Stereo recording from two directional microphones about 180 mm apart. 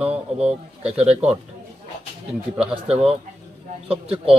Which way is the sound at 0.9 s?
35° right (ahead or behind).